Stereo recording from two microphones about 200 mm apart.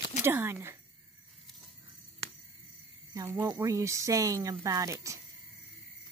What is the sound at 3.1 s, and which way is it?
A woman's voice, 15° right (ahead or behind).